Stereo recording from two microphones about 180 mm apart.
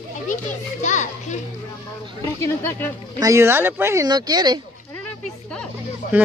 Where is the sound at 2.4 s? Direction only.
15° left (ahead or behind).